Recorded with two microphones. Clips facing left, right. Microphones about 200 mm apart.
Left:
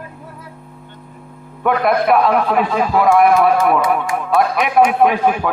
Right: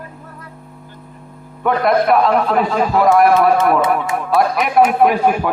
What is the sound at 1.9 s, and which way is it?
A man's voice, 5° left (ahead or behind).